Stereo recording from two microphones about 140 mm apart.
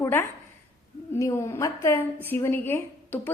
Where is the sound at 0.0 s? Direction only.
20° left (ahead or behind).